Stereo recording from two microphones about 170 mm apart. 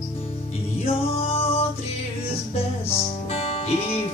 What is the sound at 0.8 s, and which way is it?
Music, 35° left (ahead or behind).